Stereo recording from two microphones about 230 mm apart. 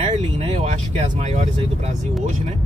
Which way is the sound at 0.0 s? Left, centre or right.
Right.